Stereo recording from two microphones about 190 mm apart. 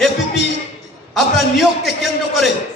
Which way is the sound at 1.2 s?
Centre (ahead or behind).